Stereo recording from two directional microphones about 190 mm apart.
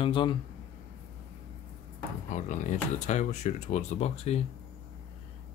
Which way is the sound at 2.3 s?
40° left (ahead or behind).